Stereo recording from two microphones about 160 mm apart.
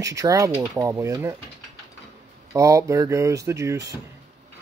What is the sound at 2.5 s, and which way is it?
Speech, 20° right (ahead or behind).